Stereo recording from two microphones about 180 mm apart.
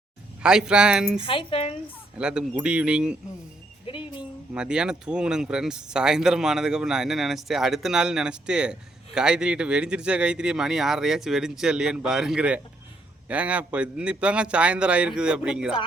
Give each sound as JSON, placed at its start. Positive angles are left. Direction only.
{"t": 0.4, "sound": "speech", "side_deg": -5}
{"t": 1.2, "sound": "a woman's voice", "side_deg": 30}
{"t": 2.1, "sound": "speech", "side_deg": -5}
{"t": 3.8, "sound": "speech", "side_deg": 25}
{"t": 4.5, "sound": "a man's voice", "side_deg": -5}